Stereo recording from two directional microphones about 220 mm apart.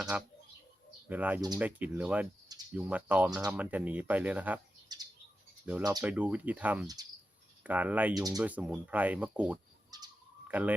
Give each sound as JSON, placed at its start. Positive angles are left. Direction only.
{"t": 0.1, "sound": "speech", "side_deg": -5}
{"t": 4.9, "sound": "bird", "side_deg": -20}
{"t": 5.8, "sound": "speech", "side_deg": -15}
{"t": 6.1, "sound": "speech", "side_deg": -5}
{"t": 6.8, "sound": "speech", "side_deg": -15}
{"t": 8.4, "sound": "speech", "side_deg": -5}
{"t": 9.9, "sound": "bird", "side_deg": -15}